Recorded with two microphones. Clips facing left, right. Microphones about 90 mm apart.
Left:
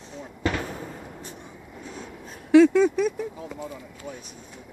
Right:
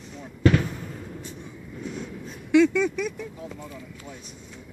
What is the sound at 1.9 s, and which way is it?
Vehicle, 40° left (ahead or behind).